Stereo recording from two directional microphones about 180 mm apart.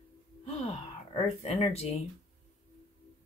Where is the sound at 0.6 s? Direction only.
35° left (ahead or behind).